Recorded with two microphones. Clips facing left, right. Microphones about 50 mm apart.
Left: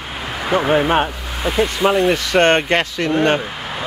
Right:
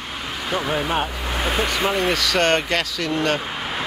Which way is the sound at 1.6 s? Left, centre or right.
Right.